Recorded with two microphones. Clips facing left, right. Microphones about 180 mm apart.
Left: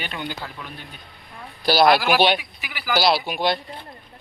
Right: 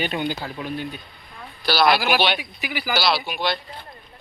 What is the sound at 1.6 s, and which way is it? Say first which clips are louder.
Speech: left 2 dB; 45° left (ahead or behind).